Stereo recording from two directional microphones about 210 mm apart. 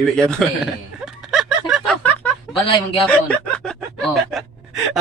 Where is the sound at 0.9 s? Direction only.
Centre (ahead or behind).